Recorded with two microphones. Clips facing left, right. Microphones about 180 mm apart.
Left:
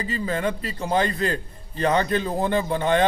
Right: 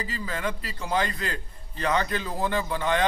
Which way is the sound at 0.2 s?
30° left (ahead or behind).